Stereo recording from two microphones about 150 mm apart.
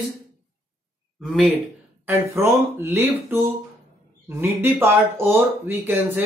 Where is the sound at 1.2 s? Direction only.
5° right (ahead or behind).